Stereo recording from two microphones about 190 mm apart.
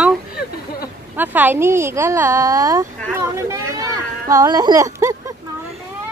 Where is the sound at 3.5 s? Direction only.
15° right (ahead or behind).